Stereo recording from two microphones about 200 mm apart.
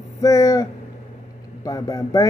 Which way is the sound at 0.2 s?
15° left (ahead or behind).